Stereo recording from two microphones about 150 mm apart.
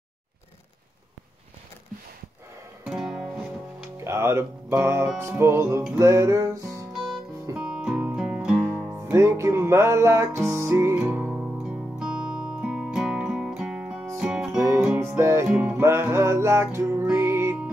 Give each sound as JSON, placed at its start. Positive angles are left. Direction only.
{"t": 2.8, "sound": "music", "side_deg": -5}
{"t": 4.0, "sound": "music", "side_deg": -15}
{"t": 6.9, "sound": "music", "side_deg": 0}
{"t": 9.0, "sound": "music", "side_deg": -15}
{"t": 15.0, "sound": "music", "side_deg": -20}